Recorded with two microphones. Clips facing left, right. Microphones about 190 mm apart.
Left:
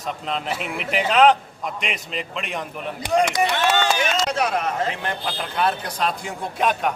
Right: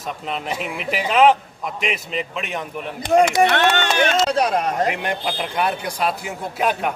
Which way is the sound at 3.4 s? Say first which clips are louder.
Right 3 dB; 65° right (ahead or behind).